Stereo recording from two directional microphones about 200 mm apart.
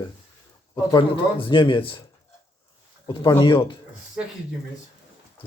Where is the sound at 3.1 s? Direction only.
20° left (ahead or behind).